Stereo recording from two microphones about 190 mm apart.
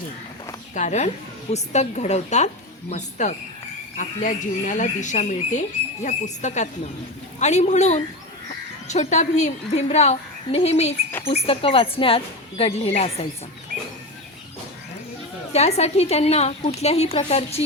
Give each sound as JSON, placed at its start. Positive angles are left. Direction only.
{"t": 0.7, "sound": "speech", "side_deg": 40}
{"t": 15.5, "sound": "speech", "side_deg": 35}